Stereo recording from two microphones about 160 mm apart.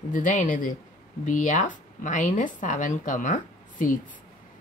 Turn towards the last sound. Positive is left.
turn(degrees=55)  # may be behind; listen again after turning